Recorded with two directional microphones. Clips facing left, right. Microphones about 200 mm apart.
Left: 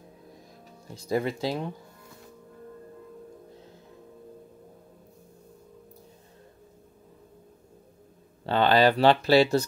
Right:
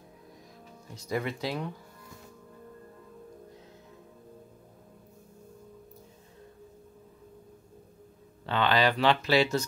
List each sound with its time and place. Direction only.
1.0 s speech: 30° left (ahead or behind)
8.5 s speech: 35° left (ahead or behind)